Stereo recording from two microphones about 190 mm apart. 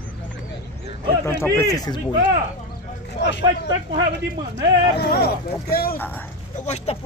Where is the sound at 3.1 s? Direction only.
65° left (ahead or behind).